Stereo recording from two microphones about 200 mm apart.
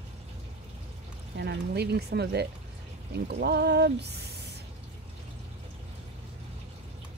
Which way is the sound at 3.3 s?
55° right (ahead or behind).